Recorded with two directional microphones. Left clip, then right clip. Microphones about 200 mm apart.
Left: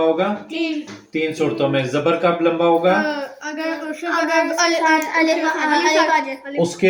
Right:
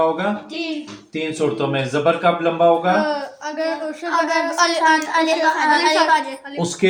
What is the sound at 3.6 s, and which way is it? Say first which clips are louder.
Speech: right 2 dB; 10° right (ahead or behind).